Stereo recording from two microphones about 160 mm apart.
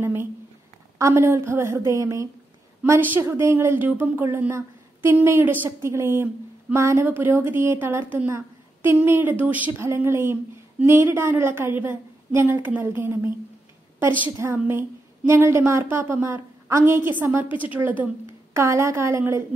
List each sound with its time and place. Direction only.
0.0 s speech: 15° right (ahead or behind)
18.5 s speech: 15° right (ahead or behind)